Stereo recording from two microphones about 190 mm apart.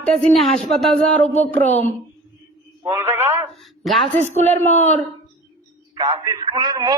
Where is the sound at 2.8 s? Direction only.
10° right (ahead or behind).